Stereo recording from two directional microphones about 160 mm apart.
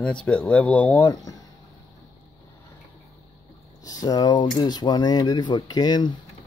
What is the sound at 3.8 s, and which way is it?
Speech, 20° left (ahead or behind).